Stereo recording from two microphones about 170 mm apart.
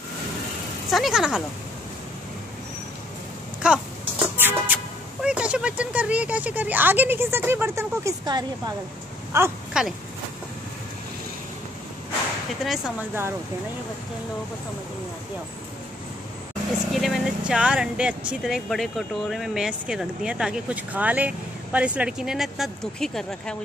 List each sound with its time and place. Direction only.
0.8 s speech: centre (ahead or behind)
3.6 s speech: 5° right (ahead or behind)
4.4 s music: 10° right (ahead or behind)
5.2 s speech: 5° right (ahead or behind)
9.8 s speech: 5° right (ahead or behind)
12.6 s speech: 5° right (ahead or behind)
16.9 s speech: centre (ahead or behind)